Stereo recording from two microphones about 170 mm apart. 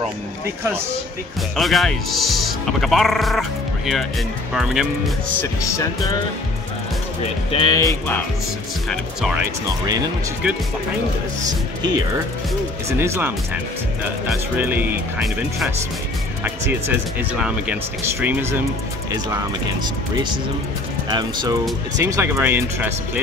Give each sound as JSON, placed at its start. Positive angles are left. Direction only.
{"t": 1.6, "sound": "speech", "side_deg": 0}
{"t": 5.4, "sound": "music", "side_deg": 15}
{"t": 7.5, "sound": "speech", "side_deg": 25}
{"t": 13.0, "sound": "speech", "side_deg": -15}
{"t": 14.6, "sound": "speech", "side_deg": -10}
{"t": 21.1, "sound": "speech", "side_deg": -25}